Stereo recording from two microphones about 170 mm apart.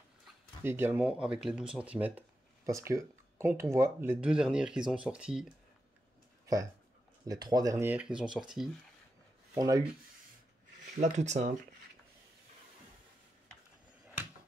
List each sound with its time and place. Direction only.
0.7 s speech: 15° right (ahead or behind)
6.4 s speech: 20° right (ahead or behind); by 8.6 s 5° right (ahead or behind)
9.6 s rub: 20° right (ahead or behind)
11.0 s speech: 45° right (ahead or behind)